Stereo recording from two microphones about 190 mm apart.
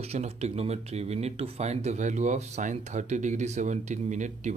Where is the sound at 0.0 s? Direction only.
35° right (ahead or behind).